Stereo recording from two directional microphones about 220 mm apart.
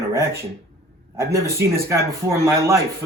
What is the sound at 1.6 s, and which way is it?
A man's voice, 10° right (ahead or behind).